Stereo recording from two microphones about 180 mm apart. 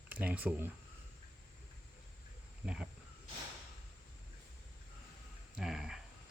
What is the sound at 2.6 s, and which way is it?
Speech, 5° right (ahead or behind).